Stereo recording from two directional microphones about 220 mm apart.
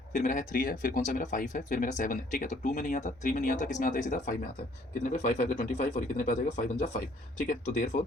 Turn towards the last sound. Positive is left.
turn(degrees=35)  # may be behind; listen again after turning